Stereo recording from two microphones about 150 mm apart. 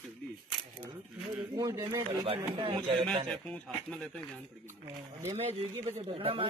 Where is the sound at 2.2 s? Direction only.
35° right (ahead or behind).